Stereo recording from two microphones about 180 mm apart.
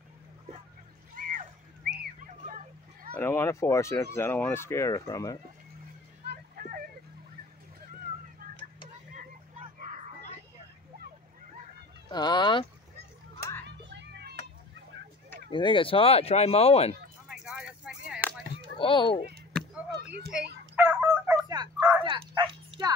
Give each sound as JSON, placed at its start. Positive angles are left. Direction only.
{"t": 1.1, "sound": "splash", "side_deg": -50}
{"t": 2.4, "sound": "a sound", "side_deg": -50}
{"t": 3.2, "sound": "speech", "side_deg": 15}
{"t": 6.2, "sound": "a sound", "side_deg": -55}
{"t": 12.1, "sound": "fowl", "side_deg": 25}
{"t": 13.8, "sound": "music", "side_deg": -75}
{"t": 15.5, "sound": "speech", "side_deg": 30}
{"t": 17.3, "sound": "a sound", "side_deg": 0}
{"t": 18.8, "sound": "a child's voice", "side_deg": 25}
{"t": 20.7, "sound": "fowl", "side_deg": -10}
{"t": 21.5, "sound": "bow-wow", "side_deg": -20}